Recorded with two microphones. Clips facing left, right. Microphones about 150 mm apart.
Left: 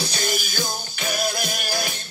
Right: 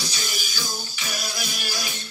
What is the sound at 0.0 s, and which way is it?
Music, 55° left (ahead or behind).